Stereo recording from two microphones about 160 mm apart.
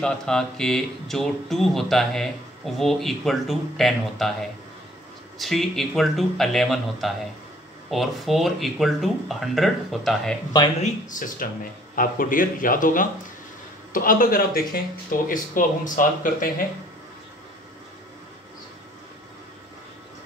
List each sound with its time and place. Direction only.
0.0 s speech: 5° left (ahead or behind)
10.8 s speech: 55° left (ahead or behind)